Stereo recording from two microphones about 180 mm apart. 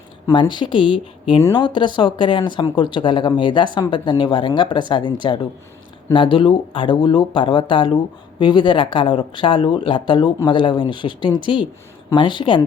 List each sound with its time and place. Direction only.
0.3 s speech: 25° left (ahead or behind)